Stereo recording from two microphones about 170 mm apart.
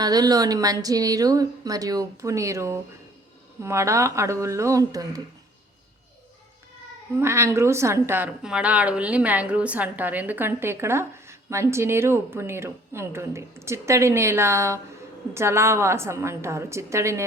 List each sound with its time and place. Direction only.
0.0 s a woman's voice: 20° right (ahead or behind)
7.2 s a woman's voice: 15° right (ahead or behind)